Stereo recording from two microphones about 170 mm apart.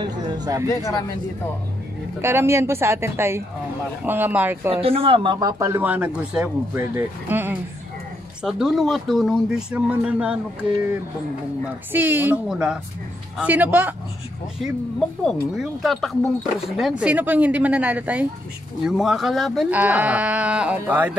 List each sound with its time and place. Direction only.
0.0 s a sound: 25° right (ahead or behind)
0.7 s speech: 20° left (ahead or behind)
2.2 s speech: 15° right (ahead or behind)
4.8 s speech: 35° right (ahead or behind); by 13.9 s 10° right (ahead or behind)
14.6 s speech: centre (ahead or behind)